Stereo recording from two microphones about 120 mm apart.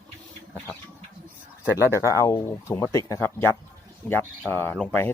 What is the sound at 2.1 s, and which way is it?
Speech, 25° left (ahead or behind).